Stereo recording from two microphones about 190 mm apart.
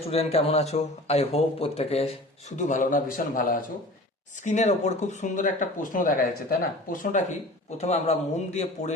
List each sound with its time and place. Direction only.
0.0 s speech: 35° left (ahead or behind)
4.4 s speech: 40° left (ahead or behind)